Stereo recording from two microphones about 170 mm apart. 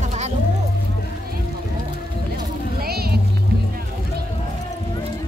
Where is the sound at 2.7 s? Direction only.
65° right (ahead or behind).